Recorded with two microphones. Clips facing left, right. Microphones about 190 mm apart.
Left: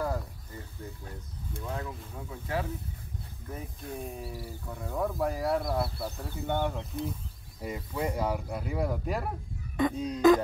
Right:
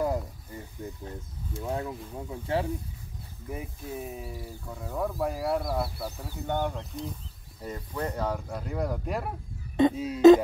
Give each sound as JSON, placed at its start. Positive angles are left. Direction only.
{"t": 0.0, "sound": "a sound", "side_deg": -20}
{"t": 1.6, "sound": "speech", "side_deg": -25}
{"t": 3.4, "sound": "speech", "side_deg": -10}